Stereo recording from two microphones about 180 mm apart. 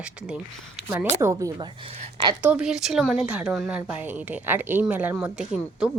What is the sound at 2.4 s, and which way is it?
Speech, 5° right (ahead or behind).